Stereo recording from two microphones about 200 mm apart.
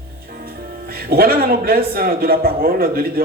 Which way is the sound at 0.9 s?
50° right (ahead or behind).